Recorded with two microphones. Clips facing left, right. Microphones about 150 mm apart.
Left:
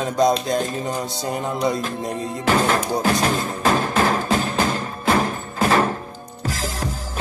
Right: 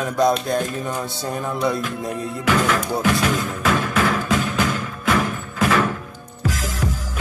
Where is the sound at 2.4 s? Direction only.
35° left (ahead or behind).